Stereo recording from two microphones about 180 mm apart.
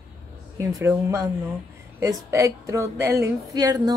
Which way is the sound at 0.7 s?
15° right (ahead or behind).